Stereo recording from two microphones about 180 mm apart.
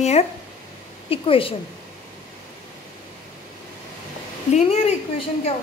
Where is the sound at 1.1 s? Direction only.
30° left (ahead or behind).